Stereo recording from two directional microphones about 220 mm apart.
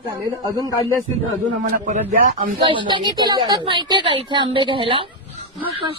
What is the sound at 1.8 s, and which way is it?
Speech, 35° right (ahead or behind).